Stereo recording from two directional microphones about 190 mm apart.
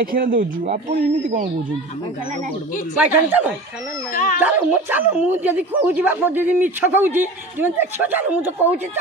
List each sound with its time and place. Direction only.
0.0 s speech: 50° right (ahead or behind)
3.3 s speech: 10° right (ahead or behind)
4.1 s speech: 45° left (ahead or behind)
4.4 s speech: 10° right (ahead or behind)